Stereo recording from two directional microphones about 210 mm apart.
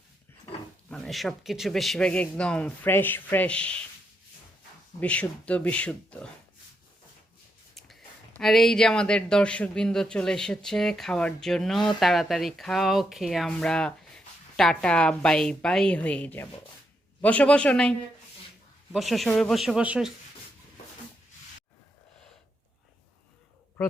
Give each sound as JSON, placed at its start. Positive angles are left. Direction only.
{"t": 0.9, "sound": "speech", "side_deg": 0}
{"t": 4.9, "sound": "speech", "side_deg": 5}
{"t": 8.4, "sound": "speech", "side_deg": 0}
{"t": 18.9, "sound": "speech", "side_deg": 0}